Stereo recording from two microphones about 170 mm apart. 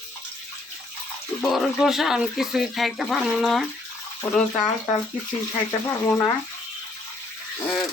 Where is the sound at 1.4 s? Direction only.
Centre (ahead or behind).